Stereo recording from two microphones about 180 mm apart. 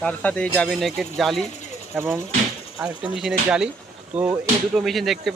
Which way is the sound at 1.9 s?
15° right (ahead or behind).